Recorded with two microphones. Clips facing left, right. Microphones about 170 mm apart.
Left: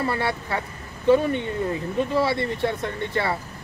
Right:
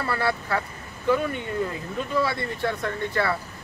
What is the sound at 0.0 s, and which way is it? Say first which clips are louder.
Speech: left 1 dB; 20° left (ahead or behind).